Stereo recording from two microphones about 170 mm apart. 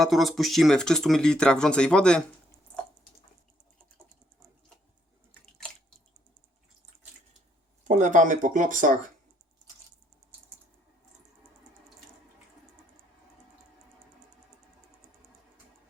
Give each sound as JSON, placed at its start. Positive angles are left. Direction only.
{"t": 0.0, "sound": "speech", "side_deg": 0}
{"t": 7.9, "sound": "speech", "side_deg": -45}